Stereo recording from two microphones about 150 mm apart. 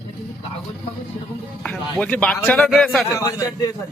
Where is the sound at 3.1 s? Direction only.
25° left (ahead or behind).